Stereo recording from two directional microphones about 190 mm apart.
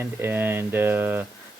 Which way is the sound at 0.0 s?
10° right (ahead or behind).